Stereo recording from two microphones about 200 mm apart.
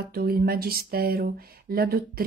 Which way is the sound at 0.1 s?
50° right (ahead or behind).